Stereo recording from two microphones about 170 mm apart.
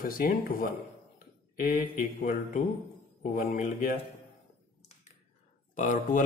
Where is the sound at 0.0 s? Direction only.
55° left (ahead or behind).